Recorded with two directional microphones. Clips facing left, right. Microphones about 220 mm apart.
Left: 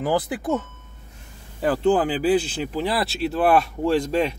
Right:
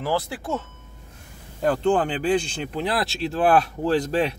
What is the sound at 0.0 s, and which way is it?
Speech, 15° left (ahead or behind).